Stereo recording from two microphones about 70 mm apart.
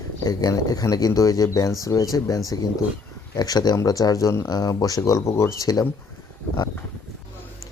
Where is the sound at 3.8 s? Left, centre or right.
Left.